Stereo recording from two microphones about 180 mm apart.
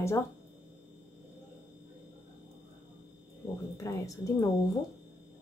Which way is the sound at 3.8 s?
20° left (ahead or behind).